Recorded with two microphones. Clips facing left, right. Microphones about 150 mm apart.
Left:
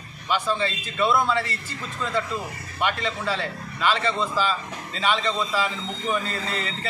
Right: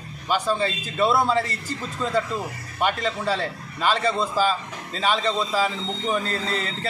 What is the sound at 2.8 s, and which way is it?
A man's voice, 40° right (ahead or behind).